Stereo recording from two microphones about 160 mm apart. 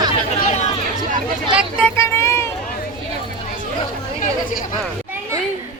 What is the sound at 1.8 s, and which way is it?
Speech, 15° left (ahead or behind).